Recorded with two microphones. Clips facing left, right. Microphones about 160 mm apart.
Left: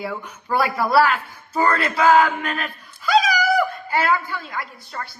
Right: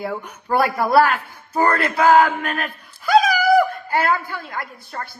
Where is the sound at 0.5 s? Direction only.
50° right (ahead or behind).